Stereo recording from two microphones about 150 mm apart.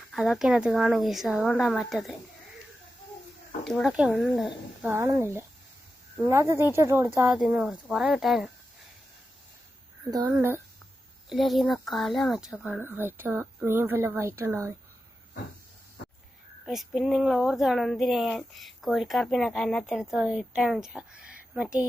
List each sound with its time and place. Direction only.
0.1 s speech: centre (ahead or behind)
3.6 s speech: 5° left (ahead or behind)
4.8 s speech: 15° right (ahead or behind)
7.3 s speech: 5° right (ahead or behind)
10.1 s speech: 25° right (ahead or behind)
11.3 s speech: centre (ahead or behind)
12.8 s speech: 15° right (ahead or behind)
16.6 s speech: centre (ahead or behind)